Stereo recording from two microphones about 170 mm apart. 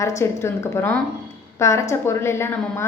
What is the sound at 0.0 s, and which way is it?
A woman's voice, 15° left (ahead or behind).